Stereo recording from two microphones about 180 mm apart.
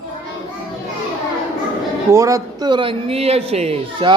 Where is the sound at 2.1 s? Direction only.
15° right (ahead or behind).